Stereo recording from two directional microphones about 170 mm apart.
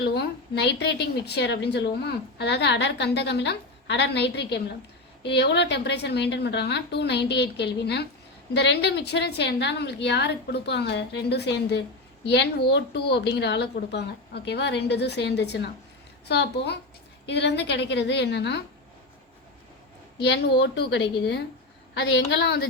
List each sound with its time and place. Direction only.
0.0 s a woman's voice: 75° left (ahead or behind)
20.2 s a woman's voice: 80° left